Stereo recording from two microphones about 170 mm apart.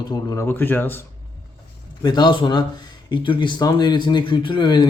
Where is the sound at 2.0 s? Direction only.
25° left (ahead or behind).